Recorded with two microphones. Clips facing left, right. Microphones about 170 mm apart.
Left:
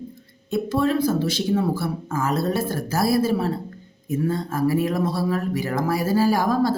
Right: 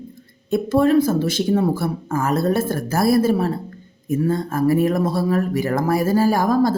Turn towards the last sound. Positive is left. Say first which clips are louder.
# right 3 dB
turn(degrees=-45)  # may be behind; listen again after turning